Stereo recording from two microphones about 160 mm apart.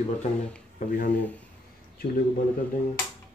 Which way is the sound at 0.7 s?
70° left (ahead or behind).